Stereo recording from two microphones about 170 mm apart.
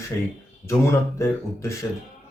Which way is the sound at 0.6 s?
15° left (ahead or behind).